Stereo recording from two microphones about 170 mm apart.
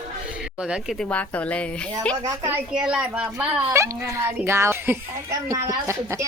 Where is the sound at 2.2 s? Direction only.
20° right (ahead or behind).